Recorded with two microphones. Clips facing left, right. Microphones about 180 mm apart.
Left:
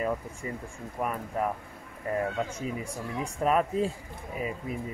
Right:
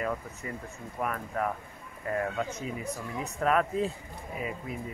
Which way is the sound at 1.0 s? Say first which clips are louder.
Left 1 dB; 5° left (ahead or behind).